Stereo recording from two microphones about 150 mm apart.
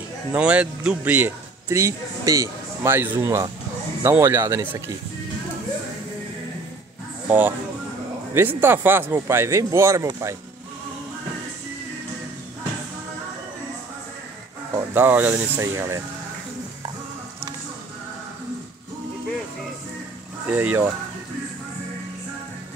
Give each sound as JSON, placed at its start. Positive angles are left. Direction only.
{"t": 0.3, "sound": "a man's voice", "side_deg": -10}
{"t": 7.2, "sound": "speech", "side_deg": -10}
{"t": 14.8, "sound": "speech", "side_deg": -15}
{"t": 20.5, "sound": "speech", "side_deg": -10}